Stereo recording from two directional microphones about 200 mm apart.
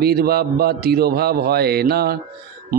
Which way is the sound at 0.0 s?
50° right (ahead or behind).